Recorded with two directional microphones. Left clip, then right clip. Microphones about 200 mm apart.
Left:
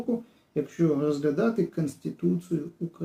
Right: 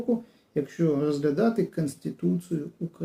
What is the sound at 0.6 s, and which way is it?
Speech, 5° right (ahead or behind).